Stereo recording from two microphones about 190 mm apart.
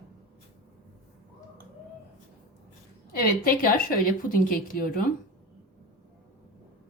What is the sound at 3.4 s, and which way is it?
A woman's voice, 50° left (ahead or behind).